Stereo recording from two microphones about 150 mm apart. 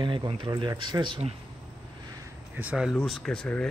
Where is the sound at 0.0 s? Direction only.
30° right (ahead or behind).